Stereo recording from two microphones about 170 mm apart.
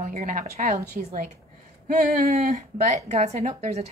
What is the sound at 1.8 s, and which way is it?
Speech, 60° right (ahead or behind).